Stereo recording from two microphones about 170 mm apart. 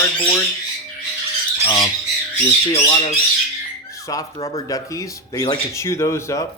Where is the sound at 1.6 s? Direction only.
25° left (ahead or behind).